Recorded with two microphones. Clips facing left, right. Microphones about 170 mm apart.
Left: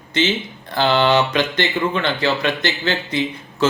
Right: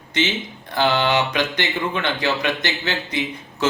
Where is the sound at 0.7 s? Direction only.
15° right (ahead or behind).